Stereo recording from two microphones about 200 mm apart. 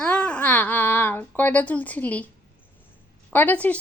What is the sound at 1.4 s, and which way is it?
Speech, 10° left (ahead or behind).